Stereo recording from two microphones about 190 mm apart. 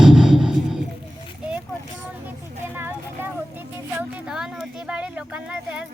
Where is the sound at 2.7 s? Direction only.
10° right (ahead or behind).